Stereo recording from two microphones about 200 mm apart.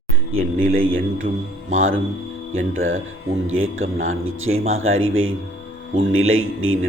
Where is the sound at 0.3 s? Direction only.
90° right.